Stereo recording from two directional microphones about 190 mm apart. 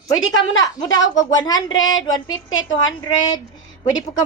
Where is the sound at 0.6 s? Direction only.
20° left (ahead or behind).